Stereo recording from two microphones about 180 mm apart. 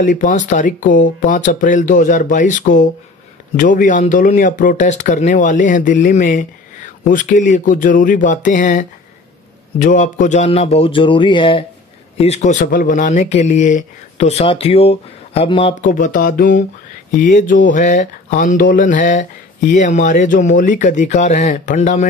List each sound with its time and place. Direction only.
0.0 s speech: 45° left (ahead or behind); by 11.6 s 25° left (ahead or behind)
12.2 s speech: 40° left (ahead or behind)
15.8 s speech: 45° left (ahead or behind)